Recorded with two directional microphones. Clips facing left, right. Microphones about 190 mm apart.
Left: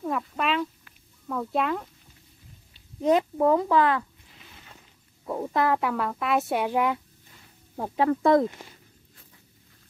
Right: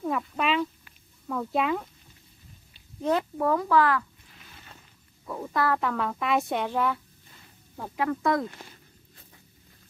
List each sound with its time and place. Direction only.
0.0 s a sound: centre (ahead or behind)
1.3 s speech: centre (ahead or behind)
3.0 s speech: 15° left (ahead or behind)
5.2 s speech: 30° left (ahead or behind); by 7.0 s 15° left (ahead or behind)
7.9 s speech: 30° left (ahead or behind)